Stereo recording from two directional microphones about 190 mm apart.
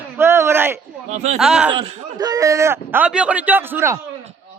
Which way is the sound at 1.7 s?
30° right (ahead or behind).